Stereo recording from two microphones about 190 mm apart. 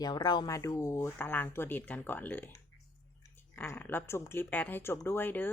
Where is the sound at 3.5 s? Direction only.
10° left (ahead or behind).